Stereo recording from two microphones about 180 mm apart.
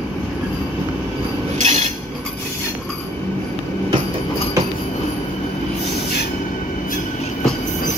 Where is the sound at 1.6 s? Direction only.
40° right (ahead or behind).